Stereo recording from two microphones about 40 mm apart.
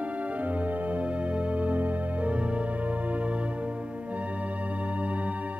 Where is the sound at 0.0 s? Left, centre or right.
Right.